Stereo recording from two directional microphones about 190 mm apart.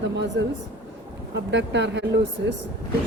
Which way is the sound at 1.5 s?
70° right (ahead or behind).